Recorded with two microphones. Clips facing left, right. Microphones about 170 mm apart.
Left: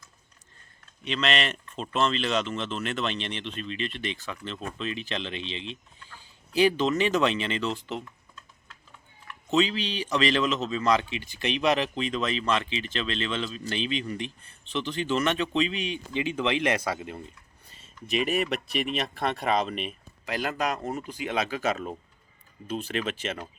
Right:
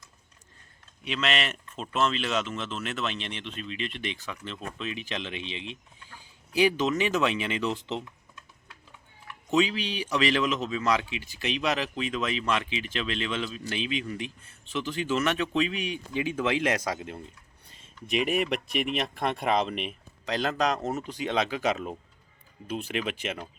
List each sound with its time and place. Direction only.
1.0 s speech: 5° right (ahead or behind)
9.5 s speech: 10° right (ahead or behind)
18.1 s speech: 15° right (ahead or behind)
20.3 s speech: 10° left (ahead or behind)
21.3 s speech: 20° right (ahead or behind)